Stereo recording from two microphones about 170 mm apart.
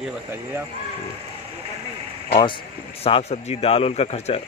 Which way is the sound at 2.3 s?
30° left (ahead or behind).